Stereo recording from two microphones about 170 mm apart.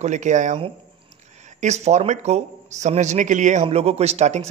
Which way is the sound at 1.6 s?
40° right (ahead or behind).